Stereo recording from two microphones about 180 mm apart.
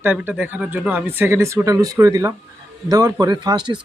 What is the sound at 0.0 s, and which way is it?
A man's voice, 10° right (ahead or behind).